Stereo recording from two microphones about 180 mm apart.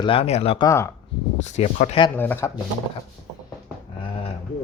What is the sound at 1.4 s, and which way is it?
Speech, 40° left (ahead or behind).